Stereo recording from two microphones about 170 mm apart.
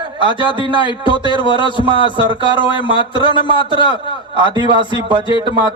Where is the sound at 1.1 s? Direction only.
30° right (ahead or behind).